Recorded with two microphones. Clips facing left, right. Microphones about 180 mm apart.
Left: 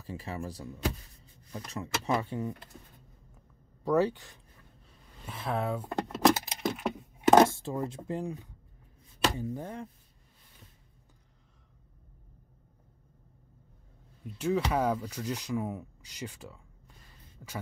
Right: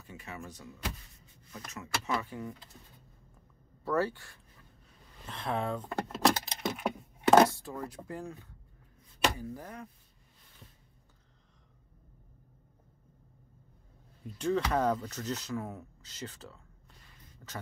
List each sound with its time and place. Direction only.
0.0 s speech: 30° left (ahead or behind)
3.8 s speech: 15° left (ahead or behind)
5.2 s speech: 5° left (ahead or behind)
6.7 s a sound: centre (ahead or behind)
7.4 s speech: 25° left (ahead or behind)
14.2 s speech: 5° left (ahead or behind)